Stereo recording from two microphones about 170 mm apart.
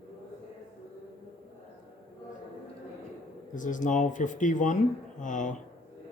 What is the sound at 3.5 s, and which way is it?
Speech, 50° left (ahead or behind).